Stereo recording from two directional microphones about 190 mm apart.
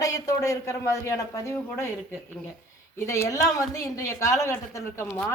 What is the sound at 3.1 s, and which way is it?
Speech, 15° left (ahead or behind).